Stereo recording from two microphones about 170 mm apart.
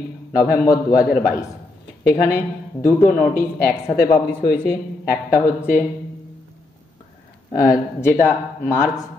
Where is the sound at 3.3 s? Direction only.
15° left (ahead or behind).